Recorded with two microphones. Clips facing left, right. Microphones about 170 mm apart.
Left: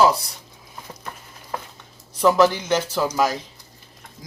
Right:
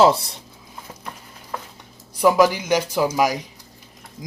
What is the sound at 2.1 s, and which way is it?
Speech, 10° right (ahead or behind).